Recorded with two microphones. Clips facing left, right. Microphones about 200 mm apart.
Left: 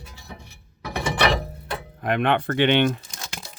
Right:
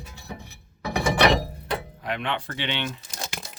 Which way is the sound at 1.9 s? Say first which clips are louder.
Left 8 dB; 55° left (ahead or behind).